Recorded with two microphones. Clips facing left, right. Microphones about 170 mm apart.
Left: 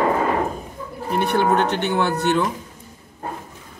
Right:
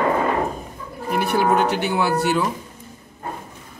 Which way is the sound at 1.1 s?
5° right (ahead or behind).